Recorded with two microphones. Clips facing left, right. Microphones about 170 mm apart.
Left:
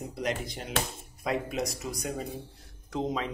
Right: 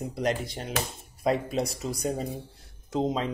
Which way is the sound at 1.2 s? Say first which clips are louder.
Right 4 dB; 30° right (ahead or behind).